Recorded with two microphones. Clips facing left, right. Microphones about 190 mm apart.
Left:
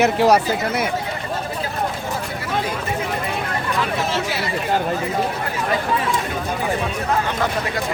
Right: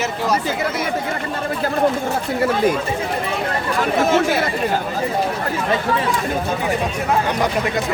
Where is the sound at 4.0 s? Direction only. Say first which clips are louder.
Right 7 dB; 50° right (ahead or behind).